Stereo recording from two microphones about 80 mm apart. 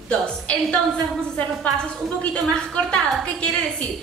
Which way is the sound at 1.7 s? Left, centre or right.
Centre.